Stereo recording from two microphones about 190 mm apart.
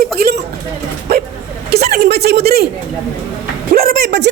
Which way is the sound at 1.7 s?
55° right (ahead or behind).